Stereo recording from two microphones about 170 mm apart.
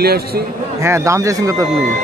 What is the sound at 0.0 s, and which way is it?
Speech, 65° right (ahead or behind).